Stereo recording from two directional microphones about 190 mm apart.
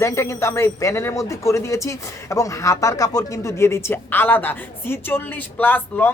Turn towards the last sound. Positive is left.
turn(degrees=10)  # may be behind; listen again after turning